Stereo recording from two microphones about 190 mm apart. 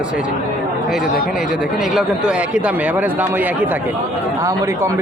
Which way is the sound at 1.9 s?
5° right (ahead or behind).